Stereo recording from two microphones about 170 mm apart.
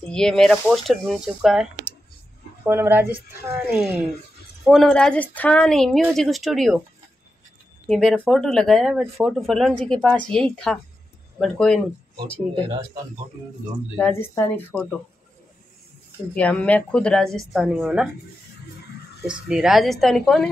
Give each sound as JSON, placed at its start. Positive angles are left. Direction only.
{"t": 0.0, "sound": "speech", "side_deg": 5}
{"t": 7.9, "sound": "speech", "side_deg": 5}
{"t": 13.9, "sound": "speech", "side_deg": 15}
{"t": 16.3, "sound": "speech", "side_deg": 5}
{"t": 19.2, "sound": "speech", "side_deg": -5}